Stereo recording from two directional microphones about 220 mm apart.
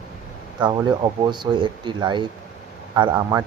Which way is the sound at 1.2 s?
20° right (ahead or behind).